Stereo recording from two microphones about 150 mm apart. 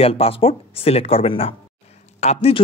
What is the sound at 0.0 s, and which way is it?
A man's voice, 40° left (ahead or behind).